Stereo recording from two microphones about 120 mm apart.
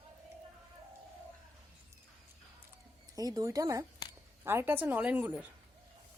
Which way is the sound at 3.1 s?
30° right (ahead or behind).